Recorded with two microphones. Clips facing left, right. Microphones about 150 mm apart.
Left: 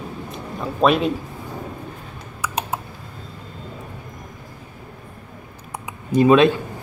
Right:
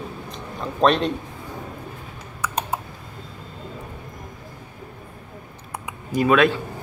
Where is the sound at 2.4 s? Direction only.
5° left (ahead or behind).